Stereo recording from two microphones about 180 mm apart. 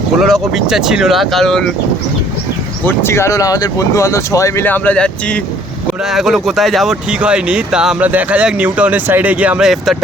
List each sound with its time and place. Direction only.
0.2 s speech: centre (ahead or behind)
2.8 s speech: 15° left (ahead or behind); by 10.0 s centre (ahead or behind)